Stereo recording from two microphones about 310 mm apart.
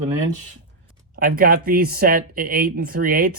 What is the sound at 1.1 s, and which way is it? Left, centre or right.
Speech, right.